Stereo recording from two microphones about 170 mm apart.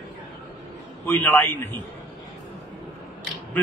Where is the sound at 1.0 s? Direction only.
10° left (ahead or behind).